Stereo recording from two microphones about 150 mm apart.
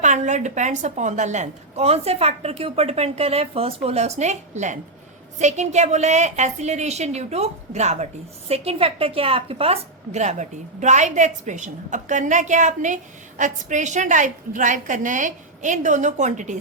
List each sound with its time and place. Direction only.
0.0 s a woman's voice: 50° right (ahead or behind)